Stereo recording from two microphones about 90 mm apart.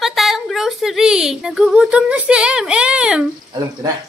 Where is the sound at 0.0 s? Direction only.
Centre (ahead or behind).